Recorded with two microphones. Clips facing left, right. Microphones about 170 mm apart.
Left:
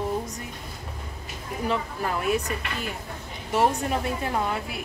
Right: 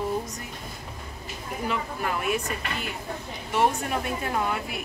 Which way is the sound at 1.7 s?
35° left (ahead or behind).